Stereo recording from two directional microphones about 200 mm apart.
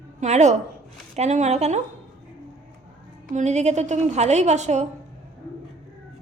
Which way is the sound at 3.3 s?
35° right (ahead or behind).